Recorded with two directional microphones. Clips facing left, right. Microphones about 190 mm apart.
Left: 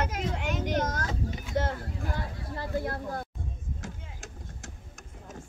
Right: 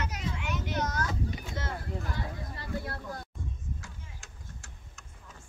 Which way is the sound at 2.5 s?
50° left (ahead or behind).